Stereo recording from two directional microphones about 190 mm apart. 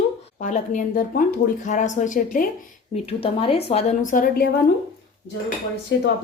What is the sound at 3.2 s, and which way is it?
A woman's voice, 30° left (ahead or behind).